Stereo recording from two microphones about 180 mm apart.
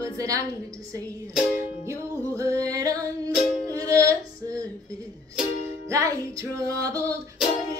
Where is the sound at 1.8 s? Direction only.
15° right (ahead or behind).